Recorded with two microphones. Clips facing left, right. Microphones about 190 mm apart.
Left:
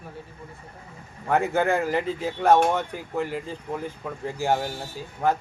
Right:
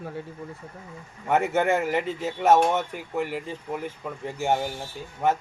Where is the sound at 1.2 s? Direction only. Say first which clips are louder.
Even; 5° right (ahead or behind).